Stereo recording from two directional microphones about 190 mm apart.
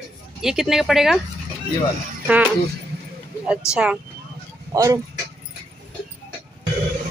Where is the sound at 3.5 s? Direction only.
5° right (ahead or behind).